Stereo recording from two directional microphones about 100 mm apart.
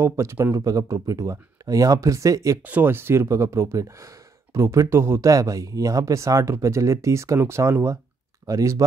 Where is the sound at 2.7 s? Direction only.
20° right (ahead or behind).